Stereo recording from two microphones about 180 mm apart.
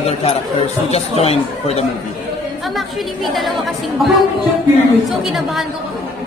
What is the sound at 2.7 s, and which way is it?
Speech, centre (ahead or behind).